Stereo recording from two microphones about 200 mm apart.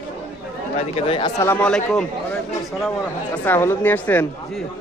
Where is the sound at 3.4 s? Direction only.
10° left (ahead or behind).